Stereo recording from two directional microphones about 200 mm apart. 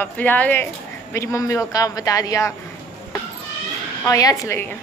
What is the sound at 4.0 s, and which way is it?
Speech, 15° left (ahead or behind).